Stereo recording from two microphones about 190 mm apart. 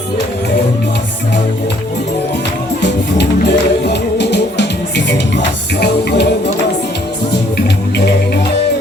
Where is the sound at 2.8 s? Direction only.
60° left (ahead or behind).